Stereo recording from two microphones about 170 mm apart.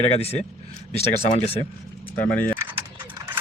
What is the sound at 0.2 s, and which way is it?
Speech, 35° left (ahead or behind).